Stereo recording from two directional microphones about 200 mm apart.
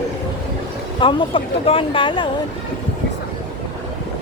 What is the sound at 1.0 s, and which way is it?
Speech, 25° left (ahead or behind).